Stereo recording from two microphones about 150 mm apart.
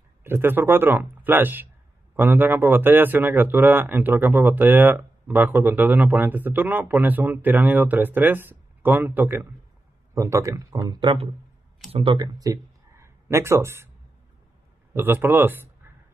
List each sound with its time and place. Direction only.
0.2 s speech: 15° right (ahead or behind)
15.0 s speech: 15° right (ahead or behind)